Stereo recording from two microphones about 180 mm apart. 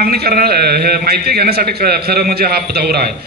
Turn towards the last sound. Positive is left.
turn(degrees=-60)  # may be behind; listen again after turning